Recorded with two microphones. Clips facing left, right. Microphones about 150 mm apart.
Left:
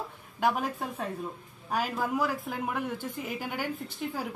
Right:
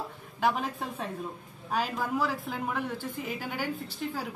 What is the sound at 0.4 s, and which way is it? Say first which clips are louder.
A woman's voice: even; 5° left (ahead or behind).